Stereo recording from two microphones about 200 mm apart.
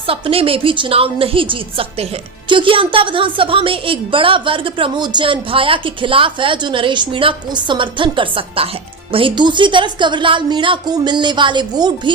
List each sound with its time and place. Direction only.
0.1 s a woman's voice: 30° right (ahead or behind)